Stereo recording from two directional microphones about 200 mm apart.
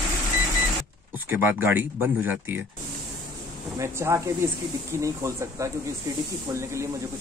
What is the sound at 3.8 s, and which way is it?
Speech, 15° right (ahead or behind).